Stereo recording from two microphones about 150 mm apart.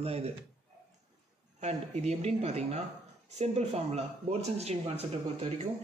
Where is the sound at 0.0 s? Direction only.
45° right (ahead or behind).